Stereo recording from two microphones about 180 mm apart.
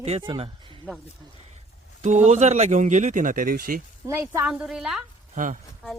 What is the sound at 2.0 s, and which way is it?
Speech, 40° right (ahead or behind).